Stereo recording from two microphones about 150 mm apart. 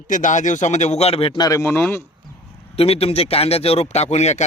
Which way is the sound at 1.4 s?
20° left (ahead or behind).